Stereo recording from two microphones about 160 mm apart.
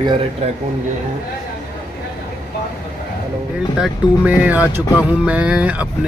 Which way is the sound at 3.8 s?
10° right (ahead or behind).